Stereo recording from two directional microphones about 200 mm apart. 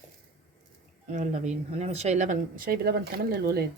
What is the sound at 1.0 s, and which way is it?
Speech, 35° right (ahead or behind).